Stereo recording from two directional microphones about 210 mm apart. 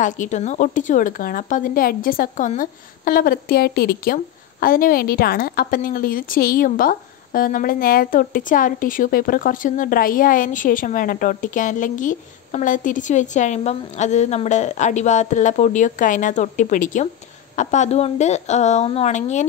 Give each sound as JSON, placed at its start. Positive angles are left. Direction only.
{"t": 0.0, "sound": "a woman's voice", "side_deg": 35}